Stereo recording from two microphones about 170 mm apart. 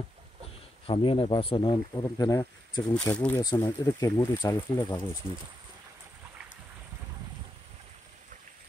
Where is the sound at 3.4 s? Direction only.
20° left (ahead or behind).